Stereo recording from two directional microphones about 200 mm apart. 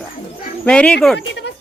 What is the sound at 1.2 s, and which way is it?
Speech, 65° left (ahead or behind).